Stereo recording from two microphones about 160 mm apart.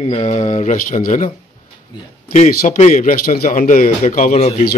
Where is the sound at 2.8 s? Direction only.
50° left (ahead or behind).